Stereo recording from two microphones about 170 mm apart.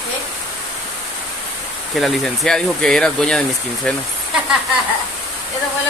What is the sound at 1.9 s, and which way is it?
Speech, centre (ahead or behind).